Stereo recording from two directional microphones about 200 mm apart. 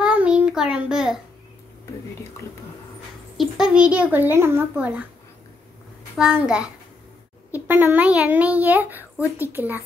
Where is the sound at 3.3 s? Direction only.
Centre (ahead or behind).